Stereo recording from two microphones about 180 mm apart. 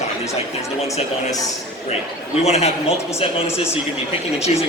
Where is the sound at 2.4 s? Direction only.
35° left (ahead or behind).